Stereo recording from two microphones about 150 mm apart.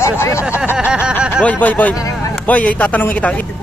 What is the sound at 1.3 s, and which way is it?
Speech, 10° left (ahead or behind).